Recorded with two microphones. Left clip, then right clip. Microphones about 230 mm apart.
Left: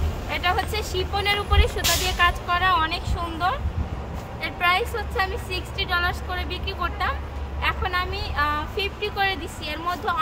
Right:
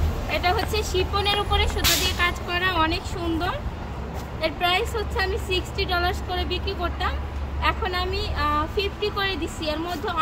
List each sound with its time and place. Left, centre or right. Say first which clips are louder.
0.3 s a woman's voice: even; centre